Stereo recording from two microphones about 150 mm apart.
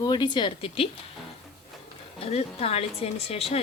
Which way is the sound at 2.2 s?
40° left (ahead or behind).